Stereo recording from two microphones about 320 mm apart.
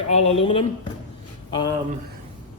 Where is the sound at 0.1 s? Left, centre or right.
Centre.